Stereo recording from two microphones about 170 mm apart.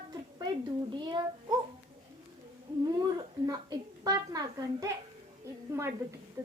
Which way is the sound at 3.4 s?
20° right (ahead or behind).